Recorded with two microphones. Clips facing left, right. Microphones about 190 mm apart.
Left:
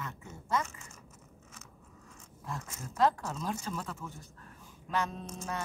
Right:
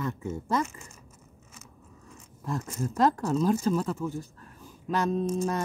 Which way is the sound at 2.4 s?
40° right (ahead or behind).